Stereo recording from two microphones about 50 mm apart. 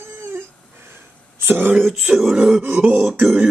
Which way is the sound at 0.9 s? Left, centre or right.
Right.